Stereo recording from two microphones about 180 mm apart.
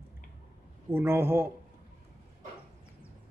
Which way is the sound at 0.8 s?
15° right (ahead or behind).